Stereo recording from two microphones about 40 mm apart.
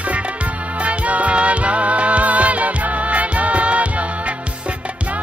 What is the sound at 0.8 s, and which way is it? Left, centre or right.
Music, right.